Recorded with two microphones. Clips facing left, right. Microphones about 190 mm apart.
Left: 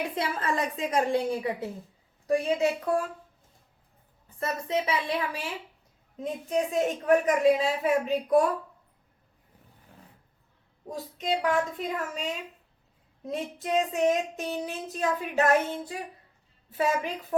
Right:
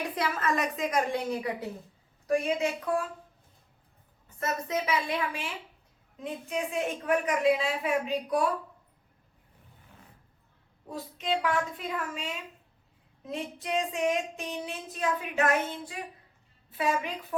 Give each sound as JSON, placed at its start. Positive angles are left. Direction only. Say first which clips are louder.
{"t": 0.2, "sound": "a woman's voice", "louder": "right 1 dB", "side_deg": 30}
{"t": 2.2, "sound": "child singing", "louder": "left 2 dB", "side_deg": 40}
{"t": 4.4, "sound": "child singing", "louder": "left 2 dB", "side_deg": 30}
{"t": 11.2, "sound": "child singing", "louder": "left 2 dB", "side_deg": 40}
{"t": 13.3, "sound": "child singing", "louder": "left 4 dB", "side_deg": 40}